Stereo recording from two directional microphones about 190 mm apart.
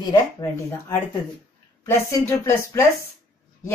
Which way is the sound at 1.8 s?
10° left (ahead or behind).